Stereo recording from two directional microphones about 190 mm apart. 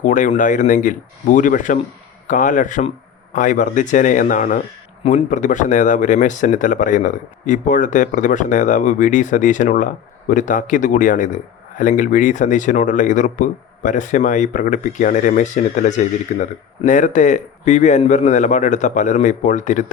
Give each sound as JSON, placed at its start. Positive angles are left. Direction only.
{"t": 0.0, "sound": "speech", "side_deg": 40}